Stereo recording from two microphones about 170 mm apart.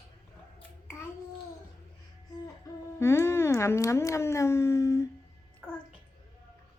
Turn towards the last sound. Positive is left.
turn(degrees=15)  # may be behind; listen again after turning